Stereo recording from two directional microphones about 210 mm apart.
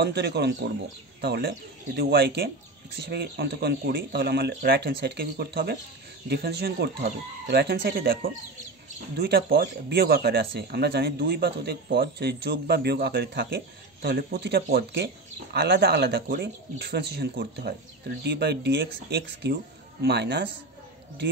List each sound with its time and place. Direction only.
0.0 s speech: 50° right (ahead or behind)